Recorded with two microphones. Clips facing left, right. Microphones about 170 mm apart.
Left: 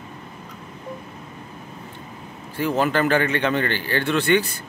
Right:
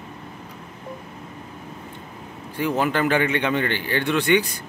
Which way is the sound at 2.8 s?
15° right (ahead or behind).